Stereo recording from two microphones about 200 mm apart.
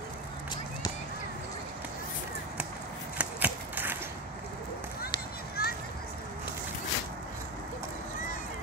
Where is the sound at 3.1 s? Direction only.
10° right (ahead or behind).